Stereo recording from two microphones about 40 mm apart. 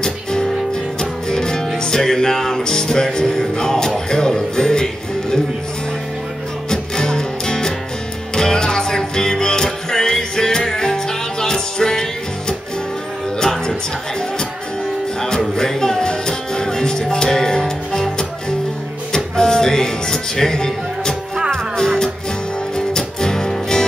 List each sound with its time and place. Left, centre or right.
0.0 s music: centre
6.7 s music: centre
15.2 s music: centre